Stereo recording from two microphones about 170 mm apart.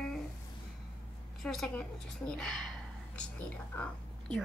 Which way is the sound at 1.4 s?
Centre (ahead or behind).